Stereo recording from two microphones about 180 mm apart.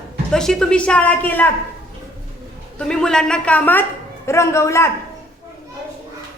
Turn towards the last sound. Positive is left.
turn(degrees=15)  # may be behind; listen again after turning